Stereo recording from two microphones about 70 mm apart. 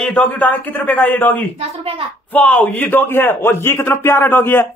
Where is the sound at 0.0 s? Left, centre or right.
Left.